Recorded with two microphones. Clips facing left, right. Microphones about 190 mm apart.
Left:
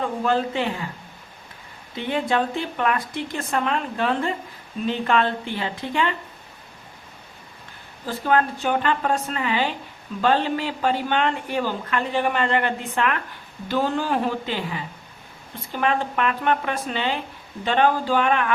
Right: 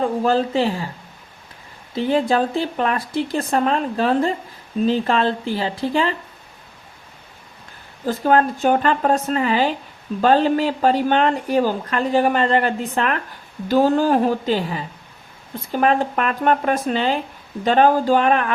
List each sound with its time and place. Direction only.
0.0 s a woman's voice: 35° right (ahead or behind)
2.0 s a woman's voice: 35° right (ahead or behind)
8.0 s a woman's voice: 45° right (ahead or behind)